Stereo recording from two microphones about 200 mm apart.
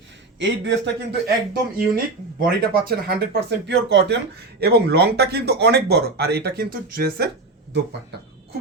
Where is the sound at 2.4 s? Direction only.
50° right (ahead or behind).